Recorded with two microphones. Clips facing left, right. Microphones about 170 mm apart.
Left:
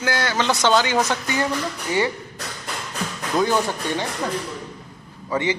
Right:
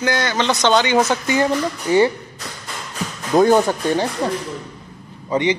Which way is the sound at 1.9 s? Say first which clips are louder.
Right 8 dB; 30° right (ahead or behind).